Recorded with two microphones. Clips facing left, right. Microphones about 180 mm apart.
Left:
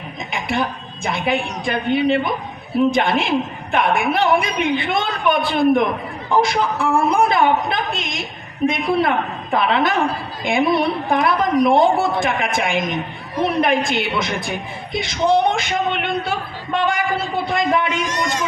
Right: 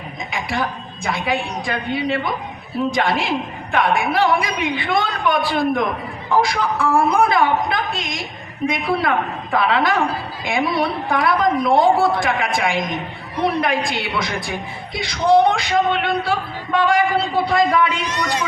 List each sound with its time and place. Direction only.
0.3 s a woman's voice: 25° left (ahead or behind)
17.4 s a woman's voice: 20° left (ahead or behind)
17.9 s speech: 45° left (ahead or behind)